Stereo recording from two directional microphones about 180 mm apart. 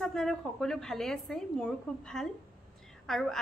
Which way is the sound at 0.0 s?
Centre (ahead or behind).